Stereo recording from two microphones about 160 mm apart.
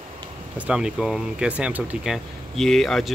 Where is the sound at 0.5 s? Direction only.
5° right (ahead or behind).